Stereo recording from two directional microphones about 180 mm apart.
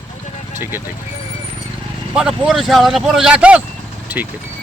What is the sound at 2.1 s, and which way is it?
Speech, 5° right (ahead or behind).